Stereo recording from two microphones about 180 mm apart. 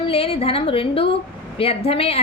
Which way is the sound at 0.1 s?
35° left (ahead or behind).